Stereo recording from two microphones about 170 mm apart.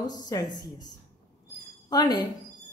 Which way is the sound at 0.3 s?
25° left (ahead or behind).